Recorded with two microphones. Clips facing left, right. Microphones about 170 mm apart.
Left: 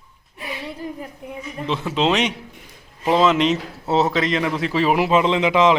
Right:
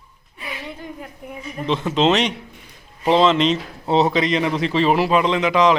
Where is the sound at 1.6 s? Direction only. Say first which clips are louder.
Right 3 dB; 5° left (ahead or behind).